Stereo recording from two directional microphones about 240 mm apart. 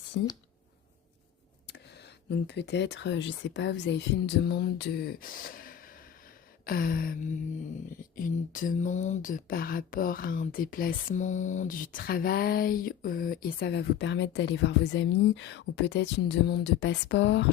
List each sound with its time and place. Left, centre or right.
0.1 s speech: left
1.6 s speech: left